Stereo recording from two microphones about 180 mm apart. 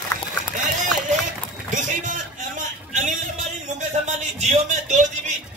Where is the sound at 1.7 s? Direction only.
45° right (ahead or behind).